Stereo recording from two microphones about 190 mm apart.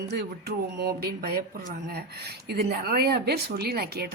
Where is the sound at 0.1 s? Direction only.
55° right (ahead or behind).